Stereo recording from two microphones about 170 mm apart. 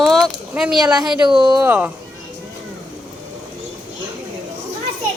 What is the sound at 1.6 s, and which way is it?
Speech, 10° right (ahead or behind).